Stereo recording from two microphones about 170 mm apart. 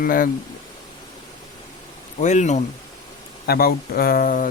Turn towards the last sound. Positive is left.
turn(degrees=55)  # may be behind; listen again after turning